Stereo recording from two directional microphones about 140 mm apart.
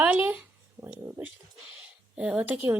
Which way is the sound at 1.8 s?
10° right (ahead or behind).